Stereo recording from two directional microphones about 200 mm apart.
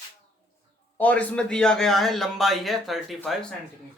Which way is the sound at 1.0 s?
5° left (ahead or behind).